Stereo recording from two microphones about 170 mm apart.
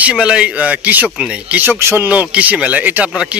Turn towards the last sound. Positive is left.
turn(degrees=-10)  # may be behind; listen again after turning